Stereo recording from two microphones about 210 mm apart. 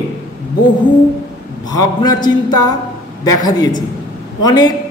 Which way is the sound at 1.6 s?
20° left (ahead or behind).